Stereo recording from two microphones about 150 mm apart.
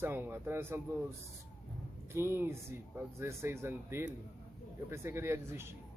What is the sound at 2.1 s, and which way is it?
A woman's voice, 15° right (ahead or behind).